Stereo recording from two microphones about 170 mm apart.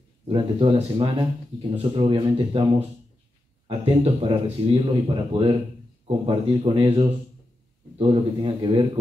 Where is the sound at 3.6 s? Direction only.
30° right (ahead or behind).